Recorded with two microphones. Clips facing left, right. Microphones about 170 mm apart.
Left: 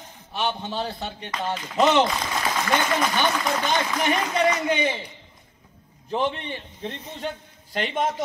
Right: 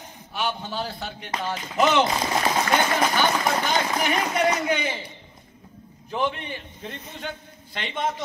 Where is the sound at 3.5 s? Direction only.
Centre (ahead or behind).